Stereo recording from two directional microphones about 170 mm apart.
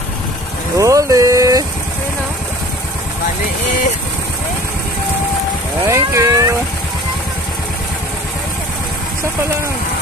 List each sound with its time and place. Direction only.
0.7 s vehicle: 20° right (ahead or behind)
5.9 s vehicle: 15° right (ahead or behind)